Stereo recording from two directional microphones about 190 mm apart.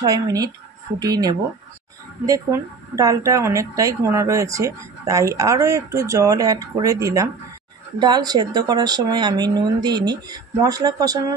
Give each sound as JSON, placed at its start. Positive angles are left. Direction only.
{"t": 0.0, "sound": "speech", "side_deg": -20}